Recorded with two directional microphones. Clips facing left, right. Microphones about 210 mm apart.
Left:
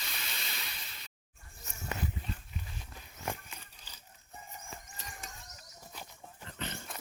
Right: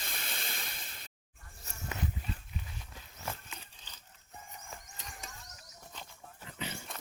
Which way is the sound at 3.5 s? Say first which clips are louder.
Right 1 dB; 10° left (ahead or behind).